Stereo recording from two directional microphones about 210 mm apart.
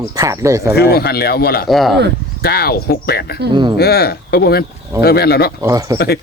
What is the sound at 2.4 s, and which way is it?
Speech, 50° left (ahead or behind).